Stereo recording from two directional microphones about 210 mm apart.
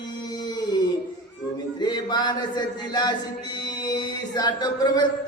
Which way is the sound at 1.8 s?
20° left (ahead or behind).